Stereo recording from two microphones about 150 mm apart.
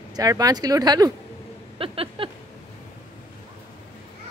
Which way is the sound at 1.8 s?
40° right (ahead or behind).